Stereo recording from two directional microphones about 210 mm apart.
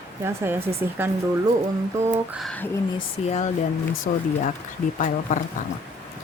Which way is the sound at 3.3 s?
35° left (ahead or behind).